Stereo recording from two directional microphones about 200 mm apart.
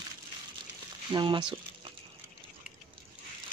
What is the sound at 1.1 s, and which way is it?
Speech, 25° right (ahead or behind).